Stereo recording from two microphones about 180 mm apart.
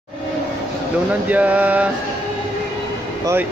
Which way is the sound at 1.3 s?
10° right (ahead or behind).